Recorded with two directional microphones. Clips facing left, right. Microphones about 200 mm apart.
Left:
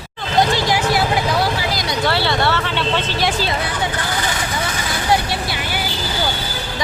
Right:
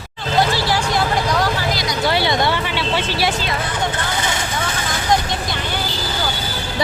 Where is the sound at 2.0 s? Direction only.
15° right (ahead or behind).